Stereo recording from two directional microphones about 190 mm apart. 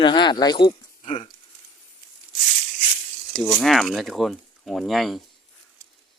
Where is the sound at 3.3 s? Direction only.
Centre (ahead or behind).